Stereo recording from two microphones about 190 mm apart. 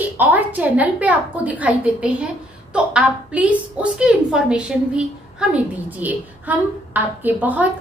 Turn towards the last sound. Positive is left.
turn(degrees=-10)  # may be behind; listen again after turning